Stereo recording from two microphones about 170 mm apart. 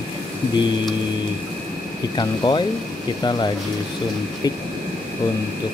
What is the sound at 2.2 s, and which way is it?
Music, 25° left (ahead or behind).